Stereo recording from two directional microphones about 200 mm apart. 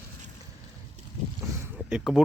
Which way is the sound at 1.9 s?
5° right (ahead or behind).